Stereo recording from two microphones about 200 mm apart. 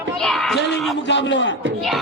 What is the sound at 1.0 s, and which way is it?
Speech, 65° left (ahead or behind).